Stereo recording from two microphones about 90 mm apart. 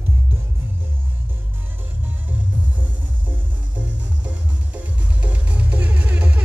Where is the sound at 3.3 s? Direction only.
15° right (ahead or behind).